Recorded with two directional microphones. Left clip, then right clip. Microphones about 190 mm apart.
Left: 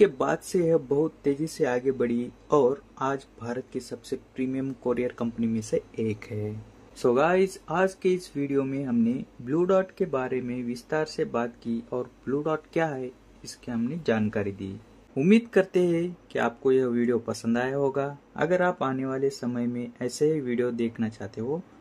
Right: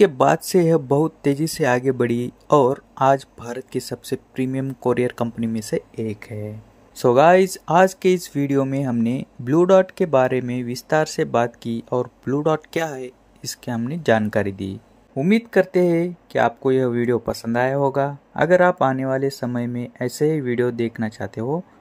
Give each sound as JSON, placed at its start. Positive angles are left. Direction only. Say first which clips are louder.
{"t": 0.0, "sound": "speech", "louder": "right 7 dB", "side_deg": -30}
{"t": 7.0, "sound": "speech", "louder": "right 9 dB", "side_deg": -30}